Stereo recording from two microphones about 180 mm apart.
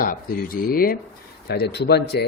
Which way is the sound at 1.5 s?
65° left (ahead or behind).